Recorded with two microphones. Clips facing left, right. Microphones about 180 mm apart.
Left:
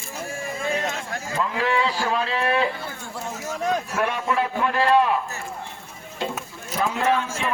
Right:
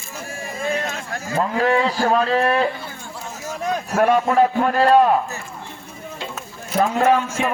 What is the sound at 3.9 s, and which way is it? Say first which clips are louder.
A man's voice: right 7 dB; 50° right (ahead or behind).